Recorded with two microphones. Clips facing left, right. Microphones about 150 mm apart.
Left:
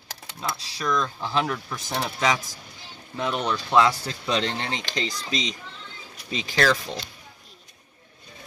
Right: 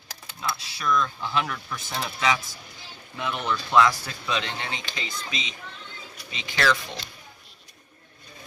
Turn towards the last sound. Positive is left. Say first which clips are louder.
# left 2 dB
turn(degrees=35)  # may be behind; listen again after turning